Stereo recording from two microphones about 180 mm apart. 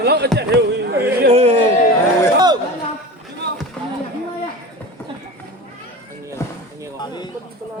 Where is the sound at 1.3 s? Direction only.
35° right (ahead or behind).